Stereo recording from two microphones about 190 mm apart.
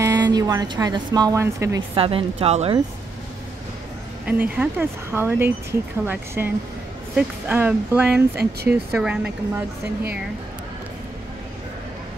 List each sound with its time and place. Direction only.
0.0 s speech: 20° right (ahead or behind)
2.0 s speech: 30° right (ahead or behind)
4.3 s speech: 10° right (ahead or behind)